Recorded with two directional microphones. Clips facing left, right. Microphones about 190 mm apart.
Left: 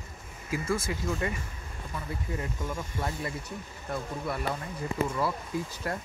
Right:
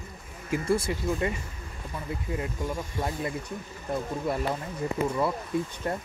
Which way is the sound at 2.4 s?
20° right (ahead or behind).